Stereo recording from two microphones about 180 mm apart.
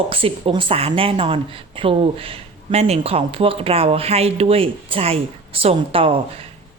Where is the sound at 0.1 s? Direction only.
30° right (ahead or behind).